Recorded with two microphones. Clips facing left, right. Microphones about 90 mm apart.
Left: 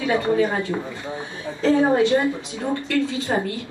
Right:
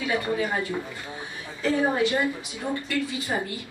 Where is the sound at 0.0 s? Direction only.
25° left (ahead or behind).